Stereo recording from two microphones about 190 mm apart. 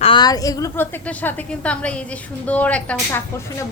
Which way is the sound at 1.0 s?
5° left (ahead or behind).